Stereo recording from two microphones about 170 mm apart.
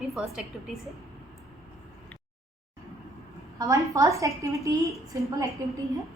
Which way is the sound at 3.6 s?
20° right (ahead or behind).